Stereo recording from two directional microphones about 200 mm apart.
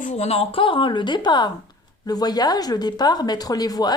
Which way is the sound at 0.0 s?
35° left (ahead or behind).